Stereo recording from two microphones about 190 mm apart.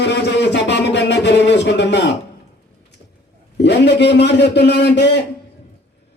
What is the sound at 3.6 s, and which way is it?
A man's voice, 65° left (ahead or behind).